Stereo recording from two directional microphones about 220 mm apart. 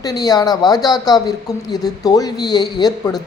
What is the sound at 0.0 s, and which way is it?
Speech, 15° left (ahead or behind).